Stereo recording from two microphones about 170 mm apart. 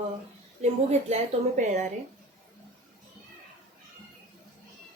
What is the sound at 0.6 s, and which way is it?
A woman's voice, 40° right (ahead or behind).